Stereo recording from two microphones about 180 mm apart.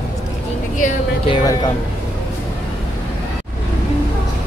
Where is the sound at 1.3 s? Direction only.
20° left (ahead or behind).